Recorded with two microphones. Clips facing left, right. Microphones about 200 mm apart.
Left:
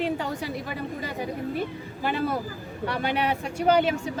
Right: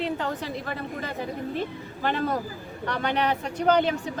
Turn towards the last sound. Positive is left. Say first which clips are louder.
# even
turn(degrees=10)  # may be behind; listen again after turning